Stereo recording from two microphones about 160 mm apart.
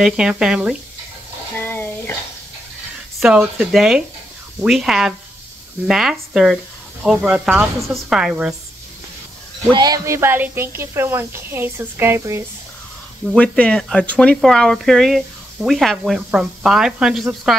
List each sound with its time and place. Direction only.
0.0 s speech: 5° right (ahead or behind)
1.6 s a sound: 15° left (ahead or behind)
3.2 s speech: 5° right (ahead or behind)
9.7 s speech: 25° right (ahead or behind)
13.3 s speech: 5° left (ahead or behind)